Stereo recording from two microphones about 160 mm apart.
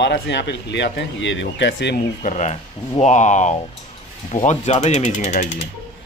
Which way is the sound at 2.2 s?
45° left (ahead or behind).